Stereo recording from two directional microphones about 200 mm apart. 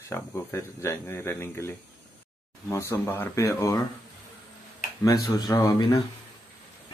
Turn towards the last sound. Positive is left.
turn(degrees=20)  # may be behind; listen again after turning